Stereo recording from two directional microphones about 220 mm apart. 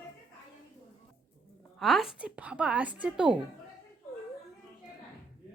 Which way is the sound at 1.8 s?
Centre (ahead or behind).